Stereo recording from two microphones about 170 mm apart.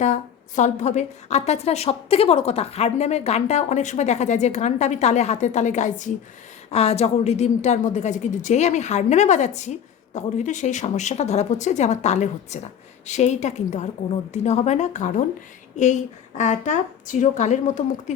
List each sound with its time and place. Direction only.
0.0 s a woman's voice: 45° left (ahead or behind)